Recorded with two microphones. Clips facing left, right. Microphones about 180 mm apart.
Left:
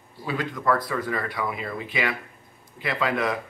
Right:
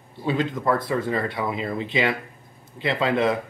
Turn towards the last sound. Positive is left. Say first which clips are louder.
# right 4 dB
turn(degrees=-25)  # may be behind; listen again after turning